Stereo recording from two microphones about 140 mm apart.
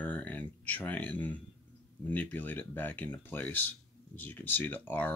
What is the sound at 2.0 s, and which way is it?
Speech, 10° left (ahead or behind).